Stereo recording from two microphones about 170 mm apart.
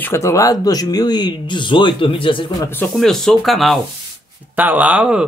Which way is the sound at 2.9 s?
Centre (ahead or behind).